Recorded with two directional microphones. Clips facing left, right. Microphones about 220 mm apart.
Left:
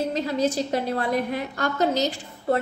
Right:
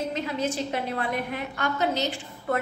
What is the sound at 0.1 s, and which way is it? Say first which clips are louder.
A woman's voice: left 5 dB; 35° left (ahead or behind).